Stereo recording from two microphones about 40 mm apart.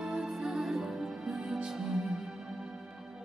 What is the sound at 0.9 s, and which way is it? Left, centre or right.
Music, centre.